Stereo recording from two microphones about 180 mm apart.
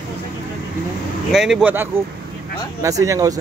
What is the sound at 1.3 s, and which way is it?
Speech, 5° right (ahead or behind).